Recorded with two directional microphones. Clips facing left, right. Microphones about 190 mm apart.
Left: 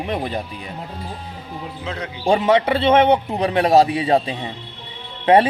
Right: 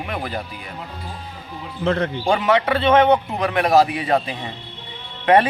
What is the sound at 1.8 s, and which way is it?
Speech, 55° right (ahead or behind).